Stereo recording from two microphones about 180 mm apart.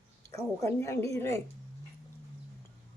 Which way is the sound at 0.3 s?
15° left (ahead or behind).